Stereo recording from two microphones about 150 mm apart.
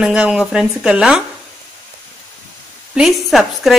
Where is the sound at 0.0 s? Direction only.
5° right (ahead or behind).